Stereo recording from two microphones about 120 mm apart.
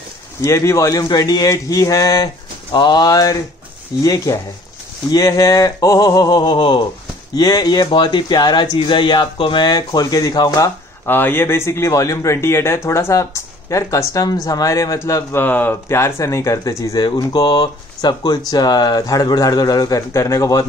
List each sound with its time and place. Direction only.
0.4 s a man's voice: 25° left (ahead or behind)
11.1 s a man's voice: 15° left (ahead or behind)